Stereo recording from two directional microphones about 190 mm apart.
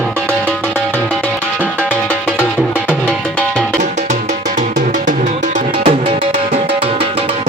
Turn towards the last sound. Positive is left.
turn(degrees=-30)  # may be behind; listen again after turning